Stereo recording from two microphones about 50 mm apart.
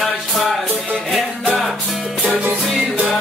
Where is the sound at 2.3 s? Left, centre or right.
Right.